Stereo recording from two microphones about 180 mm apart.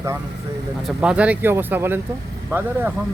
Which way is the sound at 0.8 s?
Centre (ahead or behind).